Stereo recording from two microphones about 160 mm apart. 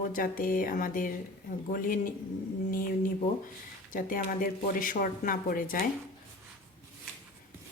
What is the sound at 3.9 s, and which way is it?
A woman's voice, 60° left (ahead or behind).